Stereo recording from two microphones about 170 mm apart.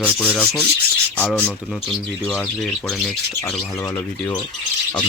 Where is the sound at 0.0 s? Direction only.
10° left (ahead or behind).